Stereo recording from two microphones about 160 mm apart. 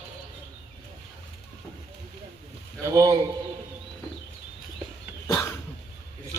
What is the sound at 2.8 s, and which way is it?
Speech, 20° right (ahead or behind).